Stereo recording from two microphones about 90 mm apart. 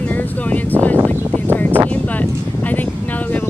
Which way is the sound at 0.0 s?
20° left (ahead or behind).